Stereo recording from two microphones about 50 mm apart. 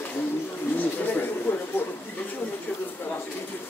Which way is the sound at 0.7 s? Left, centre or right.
Left.